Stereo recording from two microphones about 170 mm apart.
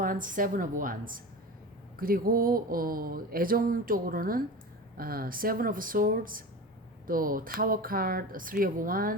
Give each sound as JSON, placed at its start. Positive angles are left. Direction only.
{"t": 0.0, "sound": "a woman's voice", "side_deg": -50}